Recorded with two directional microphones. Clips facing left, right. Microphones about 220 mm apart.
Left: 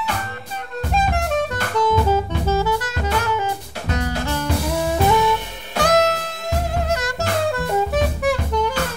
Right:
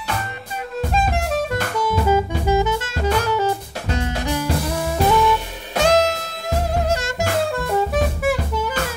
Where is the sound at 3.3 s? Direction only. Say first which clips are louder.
Right 3 dB; 35° right (ahead or behind).